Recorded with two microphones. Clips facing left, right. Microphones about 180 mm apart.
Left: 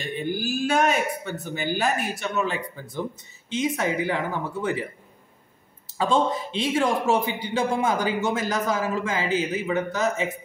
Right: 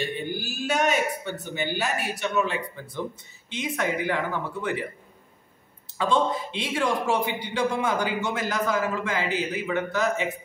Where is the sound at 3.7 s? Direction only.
35° left (ahead or behind).